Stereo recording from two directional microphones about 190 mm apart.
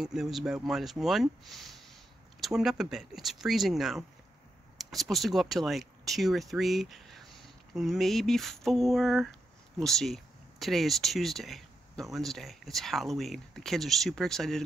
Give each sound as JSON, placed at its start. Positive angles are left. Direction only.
{"t": 0.0, "sound": "speech", "side_deg": -5}